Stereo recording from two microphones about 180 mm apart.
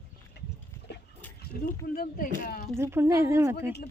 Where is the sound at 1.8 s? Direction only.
50° left (ahead or behind).